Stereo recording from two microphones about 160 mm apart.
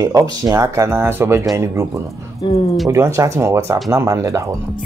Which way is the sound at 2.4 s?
30° left (ahead or behind).